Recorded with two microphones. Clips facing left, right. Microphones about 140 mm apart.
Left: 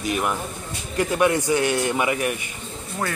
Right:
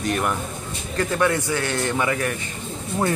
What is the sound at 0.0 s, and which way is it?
Speech, 5° left (ahead or behind).